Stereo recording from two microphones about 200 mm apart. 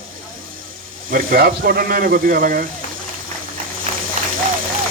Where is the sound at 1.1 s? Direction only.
45° right (ahead or behind).